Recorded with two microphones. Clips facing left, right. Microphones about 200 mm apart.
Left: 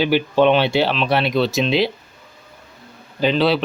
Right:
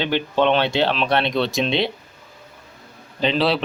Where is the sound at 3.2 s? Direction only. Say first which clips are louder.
Left 3 dB; centre (ahead or behind).